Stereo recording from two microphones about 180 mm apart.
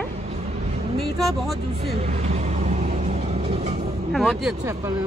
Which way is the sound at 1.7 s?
35° right (ahead or behind).